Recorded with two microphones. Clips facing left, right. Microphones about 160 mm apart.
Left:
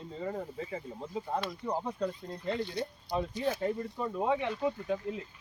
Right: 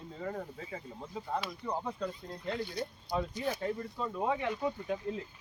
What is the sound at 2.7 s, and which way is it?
Speech, 20° left (ahead or behind).